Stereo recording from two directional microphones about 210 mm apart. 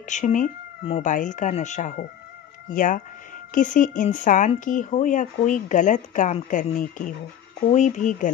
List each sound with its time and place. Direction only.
0.1 s speech: 35° left (ahead or behind)